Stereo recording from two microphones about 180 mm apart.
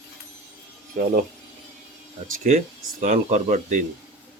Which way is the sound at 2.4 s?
40° right (ahead or behind).